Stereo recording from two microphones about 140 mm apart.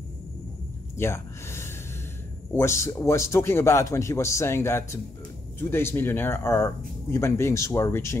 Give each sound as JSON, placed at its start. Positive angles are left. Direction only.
{"t": 0.9, "sound": "speech", "side_deg": 20}